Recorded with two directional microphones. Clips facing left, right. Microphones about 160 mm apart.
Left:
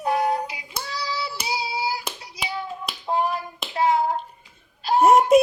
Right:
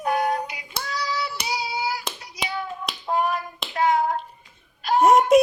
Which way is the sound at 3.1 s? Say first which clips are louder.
Even; 30° left (ahead or behind).